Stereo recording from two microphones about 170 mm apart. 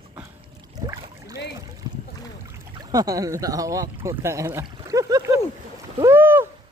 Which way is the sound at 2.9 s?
20° right (ahead or behind).